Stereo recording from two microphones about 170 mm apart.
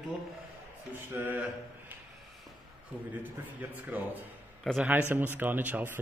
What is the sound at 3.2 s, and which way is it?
Speech, 10° right (ahead or behind).